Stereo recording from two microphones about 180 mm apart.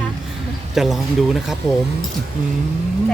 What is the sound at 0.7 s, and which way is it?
Speech, centre (ahead or behind).